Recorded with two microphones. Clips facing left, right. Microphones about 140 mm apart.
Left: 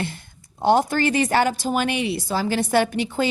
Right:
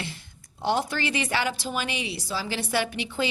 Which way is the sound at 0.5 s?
50° left (ahead or behind).